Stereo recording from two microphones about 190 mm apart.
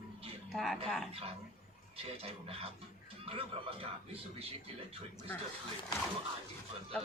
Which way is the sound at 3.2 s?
30° right (ahead or behind).